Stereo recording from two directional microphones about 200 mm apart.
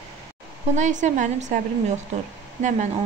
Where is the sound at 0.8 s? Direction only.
40° right (ahead or behind).